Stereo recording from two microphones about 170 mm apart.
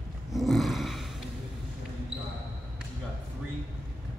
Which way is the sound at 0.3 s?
Centre (ahead or behind).